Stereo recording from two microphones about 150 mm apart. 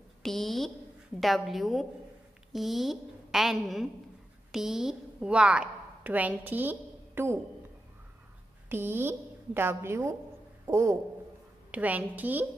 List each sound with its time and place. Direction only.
0.2 s a sound: centre (ahead or behind)
1.2 s a woman's voice: centre (ahead or behind)
8.6 s a woman's voice: 15° right (ahead or behind)